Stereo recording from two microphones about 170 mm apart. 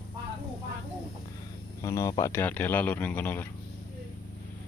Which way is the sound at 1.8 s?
20° left (ahead or behind).